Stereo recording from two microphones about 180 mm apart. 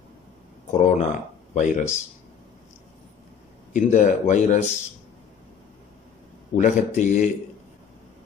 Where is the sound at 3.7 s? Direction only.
45° left (ahead or behind).